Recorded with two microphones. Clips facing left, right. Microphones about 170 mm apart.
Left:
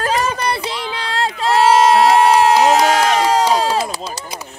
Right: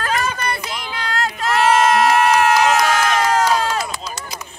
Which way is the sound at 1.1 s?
30° left (ahead or behind).